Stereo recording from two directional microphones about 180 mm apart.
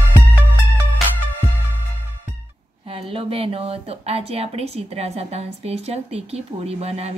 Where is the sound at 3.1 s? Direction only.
30° right (ahead or behind).